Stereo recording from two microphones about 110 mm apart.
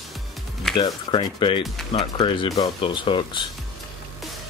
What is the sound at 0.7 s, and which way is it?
Speech, 45° left (ahead or behind).